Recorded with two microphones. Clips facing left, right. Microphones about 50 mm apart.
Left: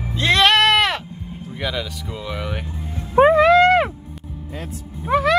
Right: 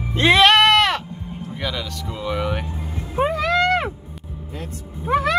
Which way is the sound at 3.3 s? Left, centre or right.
Left.